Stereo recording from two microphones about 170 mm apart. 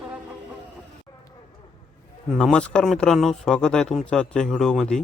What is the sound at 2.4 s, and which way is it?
Speech, 5° left (ahead or behind).